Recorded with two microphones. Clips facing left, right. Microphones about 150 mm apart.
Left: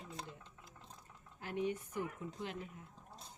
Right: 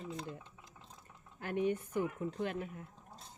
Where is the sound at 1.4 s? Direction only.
55° right (ahead or behind).